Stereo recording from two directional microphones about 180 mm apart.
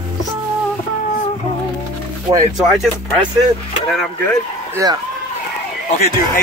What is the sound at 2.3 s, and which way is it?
Speech, 30° right (ahead or behind).